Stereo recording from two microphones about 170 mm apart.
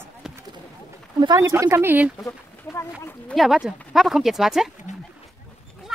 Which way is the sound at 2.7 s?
Centre (ahead or behind).